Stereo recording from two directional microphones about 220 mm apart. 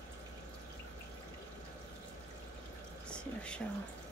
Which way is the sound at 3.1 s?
5° left (ahead or behind).